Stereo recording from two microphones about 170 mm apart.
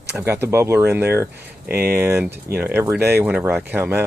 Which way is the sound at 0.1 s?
15° right (ahead or behind).